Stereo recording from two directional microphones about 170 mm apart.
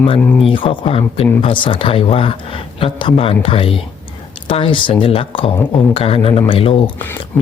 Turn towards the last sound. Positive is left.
turn(degrees=30)  # may be behind; listen again after turning